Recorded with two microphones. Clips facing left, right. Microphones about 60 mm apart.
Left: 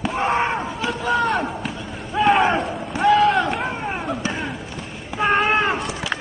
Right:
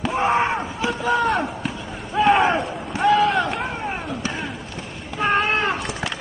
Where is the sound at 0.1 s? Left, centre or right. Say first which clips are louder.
Right 2 dB; centre.